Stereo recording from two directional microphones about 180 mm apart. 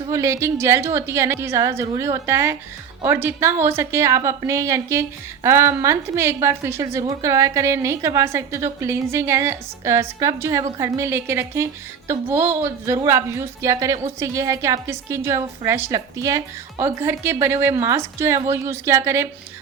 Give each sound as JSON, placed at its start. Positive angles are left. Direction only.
{"t": 0.1, "sound": "a woman's voice", "side_deg": -15}